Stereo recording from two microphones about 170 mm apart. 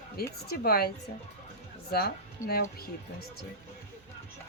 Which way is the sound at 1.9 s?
65° left (ahead or behind).